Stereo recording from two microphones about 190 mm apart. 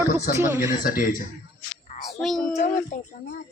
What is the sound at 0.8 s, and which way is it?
Speech, 50° left (ahead or behind).